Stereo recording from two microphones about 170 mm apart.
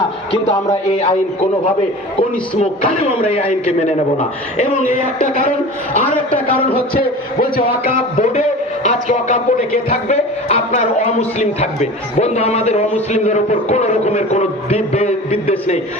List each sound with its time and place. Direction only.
0.4 s speech: 40° left (ahead or behind)
3.2 s a man's voice: 35° left (ahead or behind)
6.9 s a man's voice: 60° left (ahead or behind)
8.2 s a man's voice: 45° left (ahead or behind)